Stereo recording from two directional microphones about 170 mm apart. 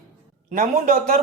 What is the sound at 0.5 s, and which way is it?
Speech, 55° right (ahead or behind).